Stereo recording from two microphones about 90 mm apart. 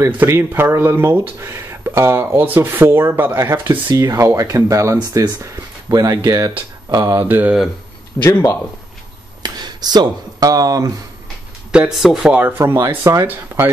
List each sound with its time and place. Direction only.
0.0 s speech: 25° right (ahead or behind); by 7.2 s 45° right (ahead or behind)
7.2 s speech: 20° right (ahead or behind)
8.2 s a man's voice: 30° left (ahead or behind)
9.4 s a sound: 50° right (ahead or behind)
12.0 s speech: 5° right (ahead or behind)
12.5 s speech: 30° right (ahead or behind)
13.5 s a sound: 25° right (ahead or behind)